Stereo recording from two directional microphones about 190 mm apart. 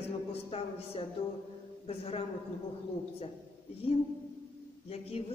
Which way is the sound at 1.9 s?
30° left (ahead or behind).